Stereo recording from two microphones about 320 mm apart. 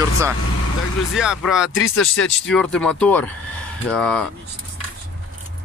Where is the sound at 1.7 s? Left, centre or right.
Left.